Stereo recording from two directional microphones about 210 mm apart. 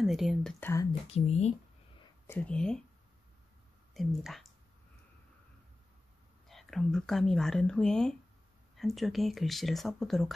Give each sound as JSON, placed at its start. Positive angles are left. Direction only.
{"t": 0.0, "sound": "speech", "side_deg": 0}
{"t": 1.0, "sound": "speech", "side_deg": 30}
{"t": 2.2, "sound": "speech", "side_deg": 5}
{"t": 3.9, "sound": "speech", "side_deg": 0}
{"t": 6.5, "sound": "speech", "side_deg": 0}